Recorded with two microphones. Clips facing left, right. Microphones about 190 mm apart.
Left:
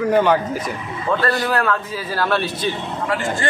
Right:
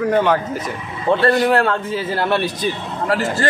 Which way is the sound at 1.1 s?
30° right (ahead or behind).